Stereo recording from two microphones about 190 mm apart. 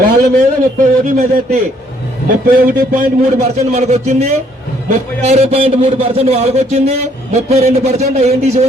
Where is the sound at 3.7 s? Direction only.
35° right (ahead or behind).